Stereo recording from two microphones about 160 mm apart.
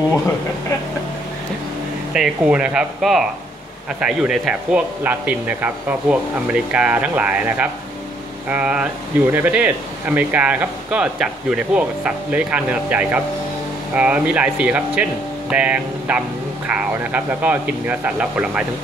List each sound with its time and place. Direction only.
2.1 s speech: 5° right (ahead or behind)